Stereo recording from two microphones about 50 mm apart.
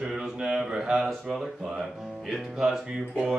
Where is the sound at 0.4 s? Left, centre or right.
Centre.